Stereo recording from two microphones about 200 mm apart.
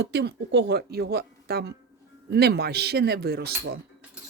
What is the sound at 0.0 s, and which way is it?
A woman's voice, 60° right (ahead or behind).